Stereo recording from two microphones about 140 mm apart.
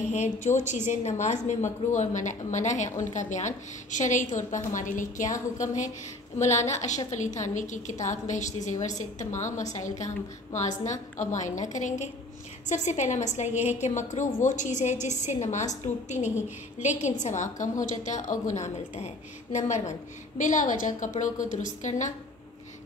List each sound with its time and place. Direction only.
0.1 s a woman's voice: 60° left (ahead or behind)
6.3 s a woman's voice: 55° left (ahead or behind)